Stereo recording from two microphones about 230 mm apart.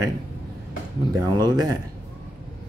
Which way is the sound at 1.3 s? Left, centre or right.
Centre.